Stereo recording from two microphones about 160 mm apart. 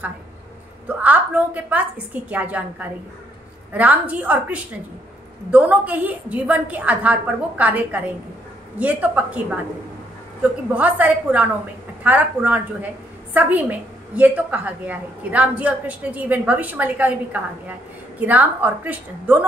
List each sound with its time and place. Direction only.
0.8 s a woman's voice: 10° right (ahead or behind)
10.7 s a woman's voice: 10° right (ahead or behind)